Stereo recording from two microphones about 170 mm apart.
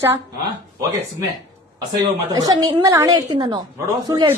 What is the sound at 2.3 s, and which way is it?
A woman's voice, 20° right (ahead or behind).